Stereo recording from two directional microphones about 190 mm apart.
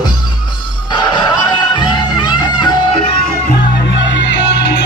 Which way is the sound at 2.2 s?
25° left (ahead or behind).